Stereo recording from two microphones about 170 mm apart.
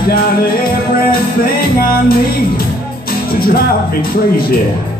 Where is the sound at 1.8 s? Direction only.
60° left (ahead or behind).